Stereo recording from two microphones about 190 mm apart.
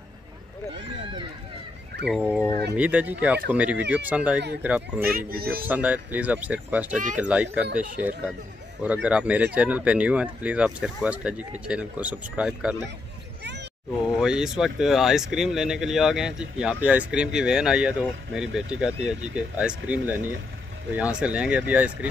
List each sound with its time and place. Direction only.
2.0 s speech: 5° right (ahead or behind)
5.1 s speech: 50° right (ahead or behind)
5.7 s speech: 10° right (ahead or behind)
7.6 s speech: 45° right (ahead or behind)
8.8 s speech: 10° right (ahead or behind)
13.4 s a sound: 60° right (ahead or behind)
14.2 s speech: 5° right (ahead or behind)